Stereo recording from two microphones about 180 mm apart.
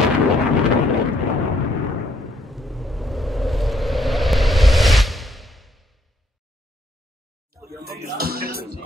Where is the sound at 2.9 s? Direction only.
Centre (ahead or behind).